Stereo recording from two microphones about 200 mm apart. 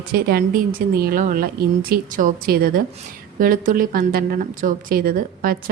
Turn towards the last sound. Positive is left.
turn(degrees=-45)  # may be behind; listen again after turning